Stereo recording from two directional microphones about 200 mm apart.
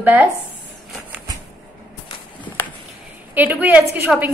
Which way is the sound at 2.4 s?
10° left (ahead or behind).